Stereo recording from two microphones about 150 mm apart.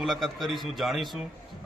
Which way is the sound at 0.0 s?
Centre (ahead or behind).